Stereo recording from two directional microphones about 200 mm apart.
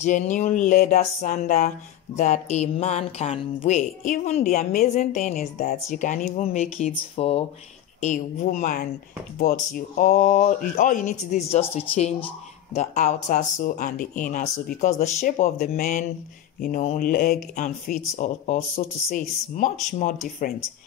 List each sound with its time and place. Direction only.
0.0 s speech: 40° left (ahead or behind)